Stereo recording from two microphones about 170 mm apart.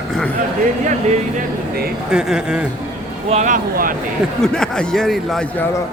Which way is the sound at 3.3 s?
50° right (ahead or behind).